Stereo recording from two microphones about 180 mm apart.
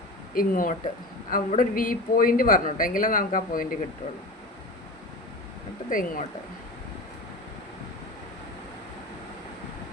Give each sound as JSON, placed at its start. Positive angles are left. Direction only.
{"t": 0.3, "sound": "speech", "side_deg": 50}
{"t": 5.9, "sound": "speech", "side_deg": 50}